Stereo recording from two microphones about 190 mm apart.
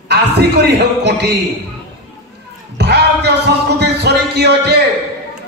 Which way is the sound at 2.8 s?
60° right (ahead or behind).